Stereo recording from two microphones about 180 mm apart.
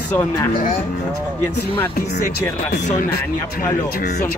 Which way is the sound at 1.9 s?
65° left (ahead or behind).